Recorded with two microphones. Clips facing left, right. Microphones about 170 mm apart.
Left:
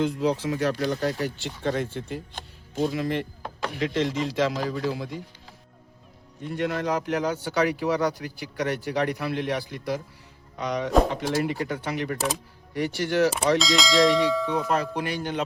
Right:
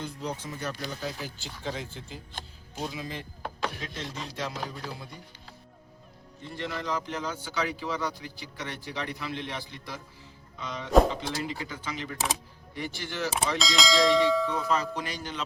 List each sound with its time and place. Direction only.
0.0 s speech: 85° left; by 3.2 s 65° left (ahead or behind)
3.8 s a man's voice: 80° left
6.4 s a man's voice: 65° left (ahead or behind)
13.6 s church bell: centre (ahead or behind)
14.5 s speech: 55° left (ahead or behind)